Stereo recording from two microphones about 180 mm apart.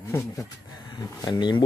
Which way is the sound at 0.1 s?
15° left (ahead or behind).